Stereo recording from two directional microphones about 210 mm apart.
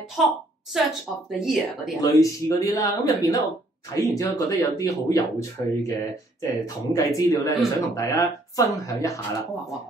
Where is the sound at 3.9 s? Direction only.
15° left (ahead or behind).